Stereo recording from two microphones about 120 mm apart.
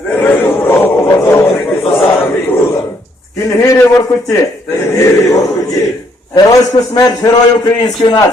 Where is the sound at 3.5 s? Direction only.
25° left (ahead or behind).